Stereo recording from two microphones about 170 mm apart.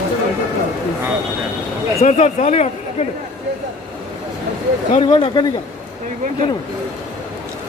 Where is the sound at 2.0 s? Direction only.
40° left (ahead or behind).